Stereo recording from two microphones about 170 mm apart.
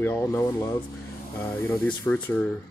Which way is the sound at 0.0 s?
15° left (ahead or behind).